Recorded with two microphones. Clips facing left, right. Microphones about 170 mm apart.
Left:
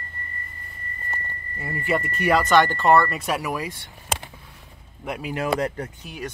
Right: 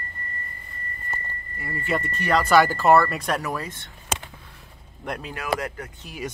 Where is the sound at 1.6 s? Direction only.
25° left (ahead or behind).